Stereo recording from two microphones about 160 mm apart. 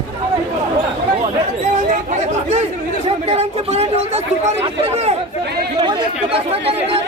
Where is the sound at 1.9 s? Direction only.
45° right (ahead or behind).